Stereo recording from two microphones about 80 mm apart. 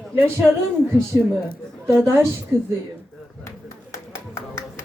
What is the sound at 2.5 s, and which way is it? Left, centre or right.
Speech, right.